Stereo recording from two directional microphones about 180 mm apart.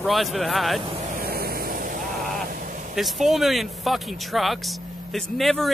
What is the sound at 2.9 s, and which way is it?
Speech, centre (ahead or behind).